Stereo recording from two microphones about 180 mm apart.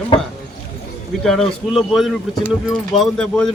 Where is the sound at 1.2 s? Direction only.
Centre (ahead or behind).